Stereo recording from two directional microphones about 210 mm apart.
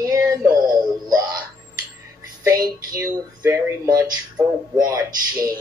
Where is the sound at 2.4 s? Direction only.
15° right (ahead or behind).